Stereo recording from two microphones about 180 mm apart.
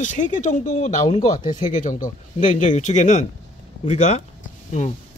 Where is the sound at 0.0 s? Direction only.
45° left (ahead or behind).